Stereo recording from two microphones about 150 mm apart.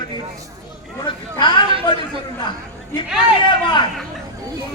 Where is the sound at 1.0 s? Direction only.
30° left (ahead or behind).